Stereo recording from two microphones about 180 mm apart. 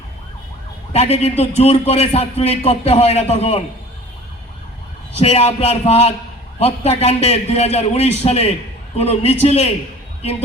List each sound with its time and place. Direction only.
0.9 s a man's voice: 35° left (ahead or behind)
5.1 s a man's voice: 35° left (ahead or behind)